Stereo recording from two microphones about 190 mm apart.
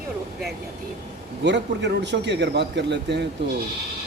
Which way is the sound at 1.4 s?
65° right (ahead or behind).